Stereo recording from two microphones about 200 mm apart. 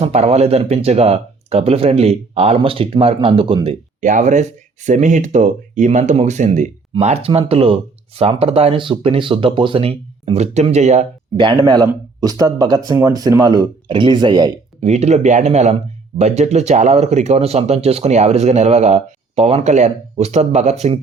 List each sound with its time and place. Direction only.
0.0 s speech: 30° right (ahead or behind)
4.0 s speech: 40° right (ahead or behind)
11.3 s speech: 20° right (ahead or behind)
14.8 s speech: 35° right (ahead or behind)